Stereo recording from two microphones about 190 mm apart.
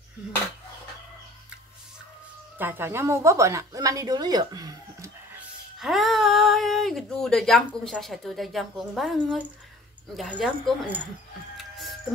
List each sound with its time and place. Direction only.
2.6 s speech: 10° right (ahead or behind)
5.8 s speech: centre (ahead or behind)